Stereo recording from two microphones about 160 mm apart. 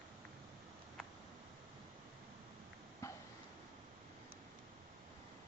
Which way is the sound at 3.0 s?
20° left (ahead or behind).